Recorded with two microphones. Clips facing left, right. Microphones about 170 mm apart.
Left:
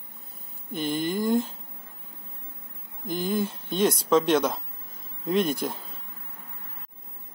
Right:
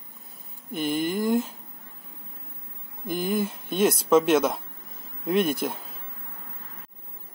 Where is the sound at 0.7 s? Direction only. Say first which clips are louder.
Right 1 dB; 5° right (ahead or behind).